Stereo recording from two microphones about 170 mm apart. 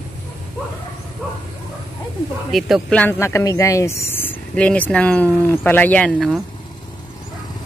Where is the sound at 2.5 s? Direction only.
5° left (ahead or behind).